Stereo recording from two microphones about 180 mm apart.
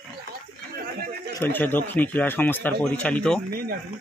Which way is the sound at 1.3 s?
10° left (ahead or behind).